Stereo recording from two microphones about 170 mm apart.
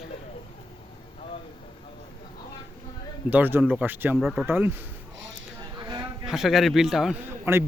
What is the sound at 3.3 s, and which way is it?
A man's voice, 10° right (ahead or behind).